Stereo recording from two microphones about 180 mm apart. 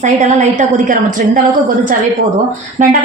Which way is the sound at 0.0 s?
40° right (ahead or behind).